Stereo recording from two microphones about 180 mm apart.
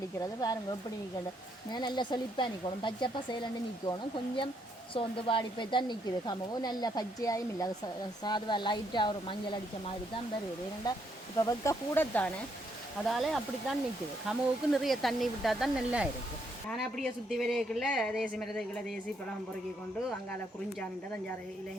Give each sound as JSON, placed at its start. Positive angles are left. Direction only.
{"t": 0.2, "sound": "a woman's voice", "side_deg": 20}
{"t": 1.7, "sound": "a woman's voice", "side_deg": 25}
{"t": 4.9, "sound": "a woman's voice", "side_deg": 30}
{"t": 11.3, "sound": "speech", "side_deg": 20}